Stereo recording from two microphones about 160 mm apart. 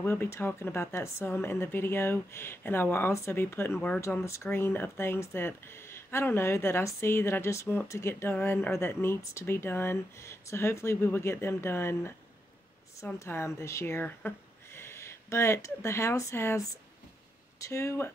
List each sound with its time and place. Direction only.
0.0 s speech: 15° left (ahead or behind)